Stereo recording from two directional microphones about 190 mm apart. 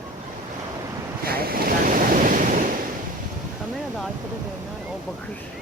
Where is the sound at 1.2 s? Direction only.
50° right (ahead or behind).